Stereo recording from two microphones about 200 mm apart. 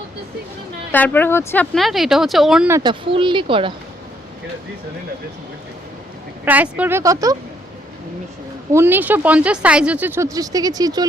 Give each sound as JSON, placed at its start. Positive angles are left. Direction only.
{"t": 0.9, "sound": "speech", "side_deg": 10}
{"t": 1.7, "sound": "speech", "side_deg": 0}
{"t": 2.7, "sound": "speech", "side_deg": -25}
{"t": 6.4, "sound": "speech", "side_deg": -10}
{"t": 8.7, "sound": "speech", "side_deg": -10}